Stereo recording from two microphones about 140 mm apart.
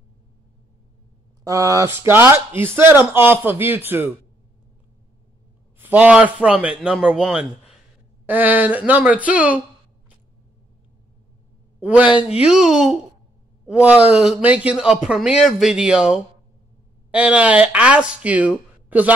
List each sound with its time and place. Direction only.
1.4 s speech: 25° right (ahead or behind)
5.8 s speech: 10° right (ahead or behind)
11.8 s speech: 10° right (ahead or behind)